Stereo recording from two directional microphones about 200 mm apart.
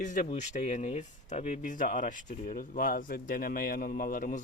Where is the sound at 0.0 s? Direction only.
40° left (ahead or behind).